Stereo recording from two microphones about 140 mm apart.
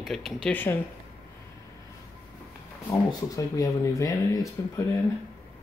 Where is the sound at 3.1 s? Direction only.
25° left (ahead or behind).